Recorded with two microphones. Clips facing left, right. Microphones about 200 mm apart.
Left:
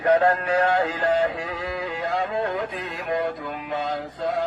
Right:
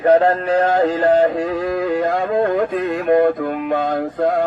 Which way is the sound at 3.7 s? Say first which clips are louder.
Right 6 dB; 55° right (ahead or behind).